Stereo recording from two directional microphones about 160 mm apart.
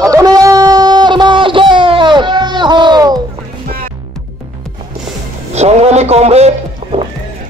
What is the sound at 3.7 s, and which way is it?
Music, 65° right (ahead or behind).